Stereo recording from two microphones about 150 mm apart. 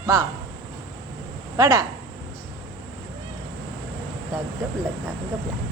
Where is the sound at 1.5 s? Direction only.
25° right (ahead or behind).